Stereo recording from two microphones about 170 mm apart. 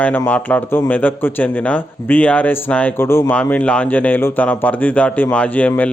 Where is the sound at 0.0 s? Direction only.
10° left (ahead or behind).